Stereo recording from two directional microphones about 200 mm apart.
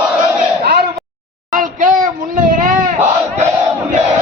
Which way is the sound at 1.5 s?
40° right (ahead or behind).